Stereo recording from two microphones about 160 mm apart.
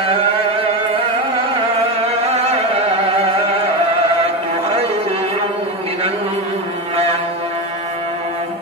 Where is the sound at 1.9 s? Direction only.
40° right (ahead or behind).